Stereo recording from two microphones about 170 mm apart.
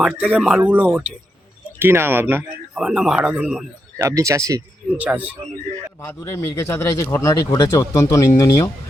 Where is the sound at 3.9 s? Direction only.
20° right (ahead or behind).